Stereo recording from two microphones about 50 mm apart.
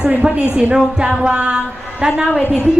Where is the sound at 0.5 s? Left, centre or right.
Centre.